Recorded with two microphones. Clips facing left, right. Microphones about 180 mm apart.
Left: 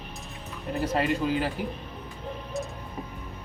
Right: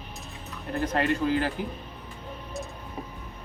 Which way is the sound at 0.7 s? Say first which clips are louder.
Even; 5° left (ahead or behind).